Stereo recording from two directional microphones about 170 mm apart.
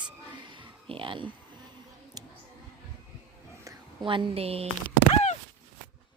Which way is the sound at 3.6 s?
30° right (ahead or behind).